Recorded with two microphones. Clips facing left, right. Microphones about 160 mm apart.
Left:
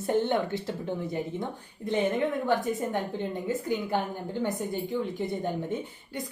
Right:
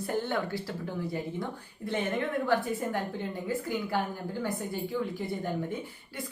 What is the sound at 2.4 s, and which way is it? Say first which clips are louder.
A woman's voice: left 1 dB; 20° left (ahead or behind).